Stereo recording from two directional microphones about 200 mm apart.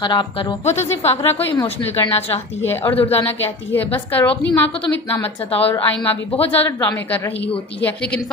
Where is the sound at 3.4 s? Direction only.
10° left (ahead or behind).